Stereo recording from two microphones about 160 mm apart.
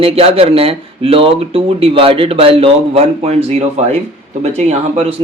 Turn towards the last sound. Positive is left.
turn(degrees=-40)  # may be behind; listen again after turning